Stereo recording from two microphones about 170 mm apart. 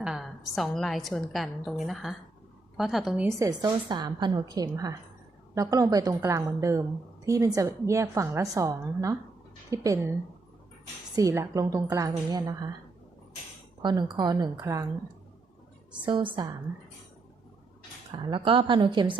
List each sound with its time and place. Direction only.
0.0 s a woman's voice: centre (ahead or behind)
3.2 s a woman's voice: 20° right (ahead or behind)
11.1 s a woman's voice: 20° right (ahead or behind)
13.8 s a woman's voice: 25° right (ahead or behind)
16.0 s a woman's voice: 30° right (ahead or behind)
18.1 s a woman's voice: 30° right (ahead or behind)